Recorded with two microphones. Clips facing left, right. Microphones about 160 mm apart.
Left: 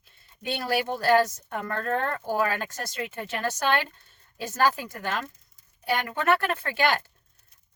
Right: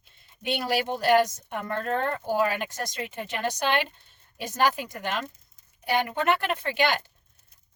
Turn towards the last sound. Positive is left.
turn(degrees=-20)  # may be behind; listen again after turning